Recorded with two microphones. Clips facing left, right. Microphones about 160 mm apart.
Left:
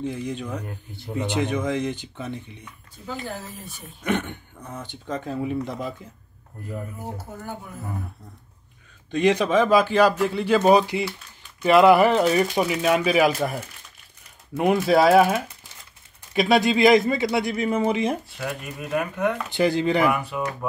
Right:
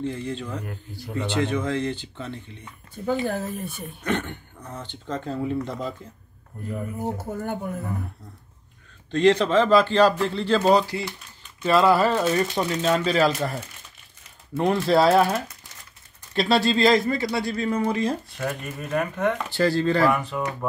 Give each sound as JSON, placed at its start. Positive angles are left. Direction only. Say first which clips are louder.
{"t": 0.0, "sound": "speech", "louder": "even", "side_deg": 15}
{"t": 3.3, "sound": "speech", "louder": "right 7 dB", "side_deg": -55}
{"t": 4.0, "sound": "speech", "louder": "left 2 dB", "side_deg": 15}
{"t": 7.0, "sound": "speech", "louder": "right 6 dB", "side_deg": -50}
{"t": 9.1, "sound": "speech", "louder": "right 1 dB", "side_deg": 15}
{"t": 18.4, "sound": "speech", "louder": "right 1 dB", "side_deg": 10}